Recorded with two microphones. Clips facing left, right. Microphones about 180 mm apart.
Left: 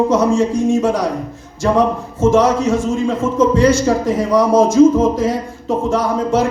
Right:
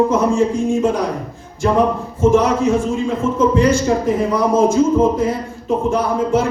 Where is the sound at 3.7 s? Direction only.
90° left.